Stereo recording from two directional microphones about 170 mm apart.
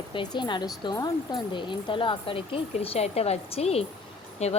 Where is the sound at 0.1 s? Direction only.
25° left (ahead or behind).